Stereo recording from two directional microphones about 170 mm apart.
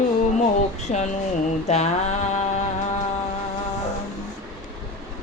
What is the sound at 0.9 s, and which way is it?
Speech, 40° left (ahead or behind).